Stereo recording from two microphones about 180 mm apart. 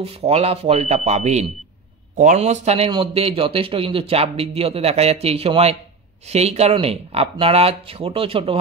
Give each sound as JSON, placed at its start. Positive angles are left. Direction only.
{"t": 0.0, "sound": "a man's voice", "side_deg": -35}